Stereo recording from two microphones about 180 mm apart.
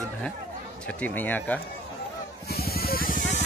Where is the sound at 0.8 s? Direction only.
10° left (ahead or behind).